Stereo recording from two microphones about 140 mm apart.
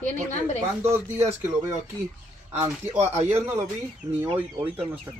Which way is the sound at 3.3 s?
20° right (ahead or behind).